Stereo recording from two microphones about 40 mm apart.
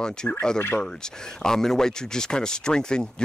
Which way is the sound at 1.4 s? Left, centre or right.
Centre.